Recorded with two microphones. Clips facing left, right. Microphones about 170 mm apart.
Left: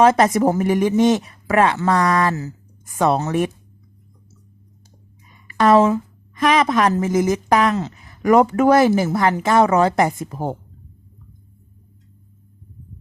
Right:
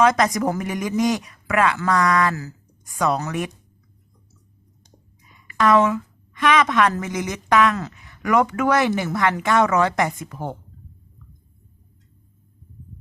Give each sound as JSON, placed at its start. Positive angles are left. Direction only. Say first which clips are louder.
{"t": 0.0, "sound": "speech", "louder": "left 4 dB", "side_deg": 30}
{"t": 5.5, "sound": "a woman's voice", "louder": "left 3 dB", "side_deg": 35}
{"t": 7.9, "sound": "speech", "louder": "left 8 dB", "side_deg": 35}